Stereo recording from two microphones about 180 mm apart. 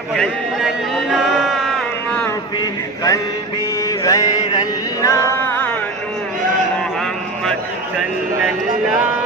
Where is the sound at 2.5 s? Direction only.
20° left (ahead or behind).